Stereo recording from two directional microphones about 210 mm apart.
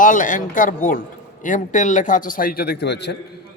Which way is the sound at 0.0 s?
40° left (ahead or behind).